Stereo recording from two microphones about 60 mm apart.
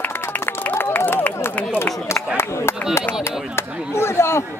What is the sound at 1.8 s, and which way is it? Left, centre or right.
Speech, left.